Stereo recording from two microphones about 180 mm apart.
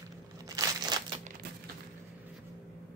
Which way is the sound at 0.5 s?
20° right (ahead or behind).